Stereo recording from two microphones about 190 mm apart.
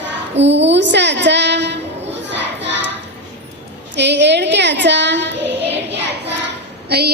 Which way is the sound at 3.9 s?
65° right (ahead or behind).